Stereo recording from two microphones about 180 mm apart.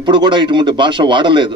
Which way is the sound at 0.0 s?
25° right (ahead or behind).